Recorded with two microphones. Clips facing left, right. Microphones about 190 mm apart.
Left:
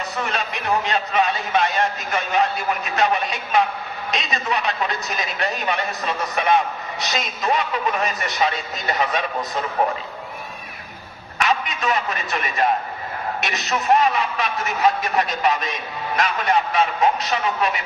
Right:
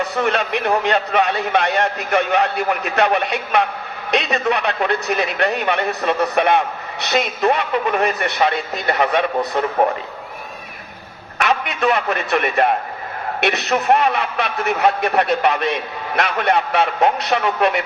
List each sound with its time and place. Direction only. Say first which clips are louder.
0.0 s speech: right 7 dB; 60° right (ahead or behind)
11.3 s a man's voice: right 3 dB; 60° right (ahead or behind)